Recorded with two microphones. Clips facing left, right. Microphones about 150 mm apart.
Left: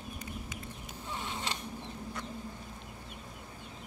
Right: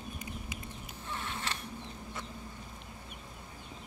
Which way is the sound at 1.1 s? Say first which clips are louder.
Left 1 dB; 15° left (ahead or behind).